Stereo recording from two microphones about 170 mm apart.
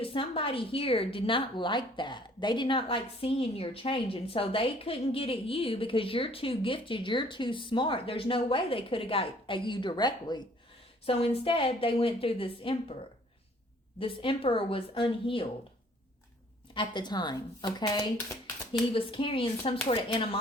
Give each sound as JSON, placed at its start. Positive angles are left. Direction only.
{"t": 0.0, "sound": "a woman's voice", "side_deg": 30}
{"t": 14.0, "sound": "a woman's voice", "side_deg": 30}
{"t": 16.7, "sound": "a woman's voice", "side_deg": 25}